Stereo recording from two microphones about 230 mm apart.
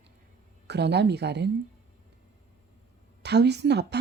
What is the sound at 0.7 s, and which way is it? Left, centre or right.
Speech, right.